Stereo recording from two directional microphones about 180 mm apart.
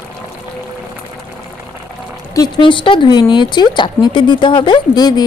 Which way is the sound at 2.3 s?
25° left (ahead or behind).